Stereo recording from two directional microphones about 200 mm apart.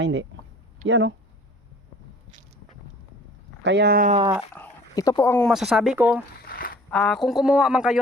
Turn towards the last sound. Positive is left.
turn(degrees=-5)  # may be behind; listen again after turning